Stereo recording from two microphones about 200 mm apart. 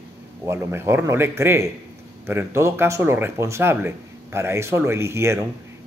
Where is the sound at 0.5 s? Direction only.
10° right (ahead or behind).